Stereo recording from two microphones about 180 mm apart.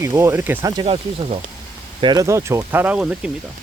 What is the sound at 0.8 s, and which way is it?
Speech, 35° right (ahead or behind).